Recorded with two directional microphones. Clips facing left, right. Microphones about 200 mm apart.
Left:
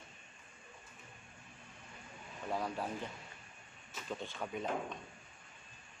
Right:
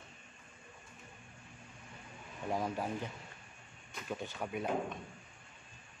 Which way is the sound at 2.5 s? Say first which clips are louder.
Right 2 dB; 20° right (ahead or behind).